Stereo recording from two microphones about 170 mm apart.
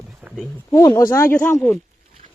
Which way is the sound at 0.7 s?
20° left (ahead or behind).